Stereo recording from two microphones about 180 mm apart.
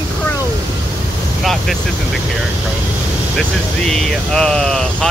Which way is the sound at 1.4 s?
Centre (ahead or behind).